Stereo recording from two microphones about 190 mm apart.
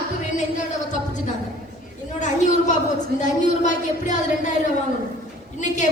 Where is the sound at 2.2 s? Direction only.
40° left (ahead or behind).